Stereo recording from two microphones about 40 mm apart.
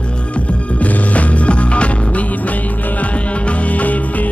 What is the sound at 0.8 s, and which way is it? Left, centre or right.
Music, left.